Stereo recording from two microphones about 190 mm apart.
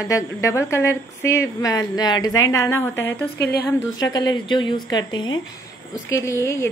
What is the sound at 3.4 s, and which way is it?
Speech, 60° left (ahead or behind).